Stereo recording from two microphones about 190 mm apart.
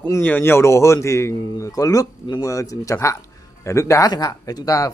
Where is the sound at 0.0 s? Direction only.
10° left (ahead or behind).